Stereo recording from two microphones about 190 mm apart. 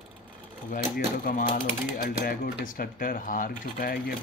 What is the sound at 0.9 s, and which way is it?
Speech, 50° left (ahead or behind).